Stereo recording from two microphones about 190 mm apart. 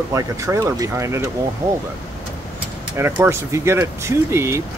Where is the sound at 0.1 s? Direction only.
15° right (ahead or behind).